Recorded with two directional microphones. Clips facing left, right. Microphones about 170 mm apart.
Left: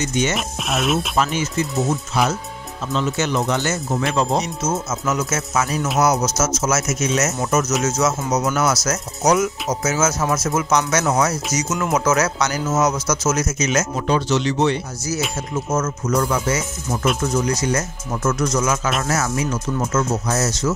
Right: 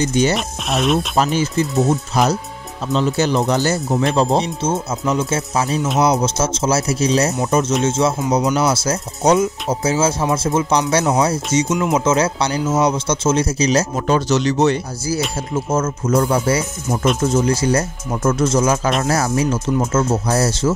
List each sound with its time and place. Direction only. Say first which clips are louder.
0.0 s speech: right 5 dB; 35° right (ahead or behind)
0.7 s speech: right 3 dB; centre (ahead or behind)
1.1 s speech: right 3 dB; 35° right (ahead or behind)
15.5 s speech: right 3 dB; 30° right (ahead or behind)